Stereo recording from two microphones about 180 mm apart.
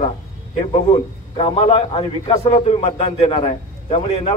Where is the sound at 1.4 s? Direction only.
30° left (ahead or behind).